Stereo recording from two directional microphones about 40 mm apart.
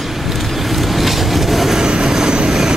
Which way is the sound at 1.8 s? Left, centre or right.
Centre.